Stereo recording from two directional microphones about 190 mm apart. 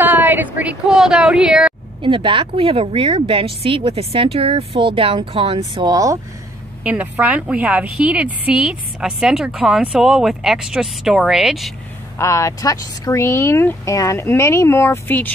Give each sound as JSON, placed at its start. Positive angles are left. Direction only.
{"t": 0.0, "sound": "speech", "side_deg": -10}
{"t": 2.0, "sound": "a woman's voice", "side_deg": -25}
{"t": 6.8, "sound": "a woman's voice", "side_deg": -5}
{"t": 12.2, "sound": "speech", "side_deg": 15}